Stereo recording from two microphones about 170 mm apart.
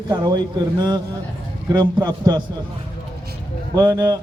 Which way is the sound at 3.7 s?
20° right (ahead or behind).